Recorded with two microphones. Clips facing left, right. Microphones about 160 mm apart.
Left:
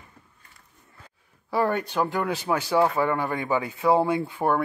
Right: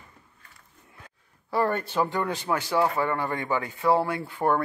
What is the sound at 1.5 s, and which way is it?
Speech, centre (ahead or behind).